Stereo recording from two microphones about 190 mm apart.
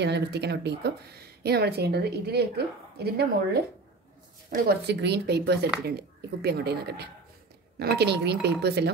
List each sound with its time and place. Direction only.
0.0 s speech: 60° right (ahead or behind)
4.6 s speech: 60° right (ahead or behind)